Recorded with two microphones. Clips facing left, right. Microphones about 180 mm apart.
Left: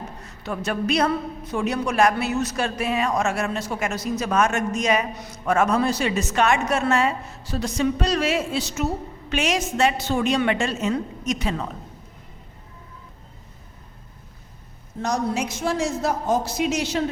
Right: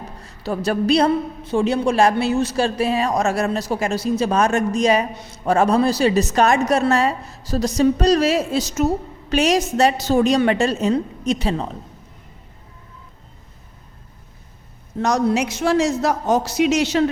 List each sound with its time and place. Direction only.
0.3 s a woman's voice: 35° right (ahead or behind)
15.0 s speech: 75° right (ahead or behind)